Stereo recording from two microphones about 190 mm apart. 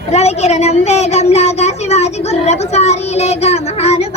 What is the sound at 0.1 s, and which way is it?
Speech, 35° left (ahead or behind).